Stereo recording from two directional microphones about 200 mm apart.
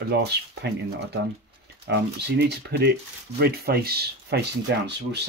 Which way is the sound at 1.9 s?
55° right (ahead or behind).